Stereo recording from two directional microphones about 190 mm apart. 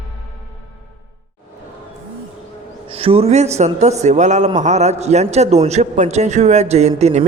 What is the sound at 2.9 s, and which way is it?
A man's voice, 30° right (ahead or behind).